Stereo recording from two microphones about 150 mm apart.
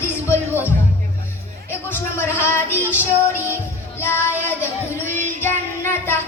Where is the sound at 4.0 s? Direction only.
15° left (ahead or behind).